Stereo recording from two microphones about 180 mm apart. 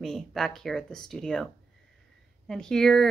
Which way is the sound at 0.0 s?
Centre (ahead or behind).